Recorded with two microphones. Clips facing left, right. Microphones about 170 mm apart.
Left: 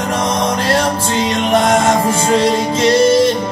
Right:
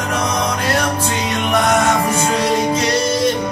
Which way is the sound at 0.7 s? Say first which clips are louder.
Left 3 dB; 30° left (ahead or behind).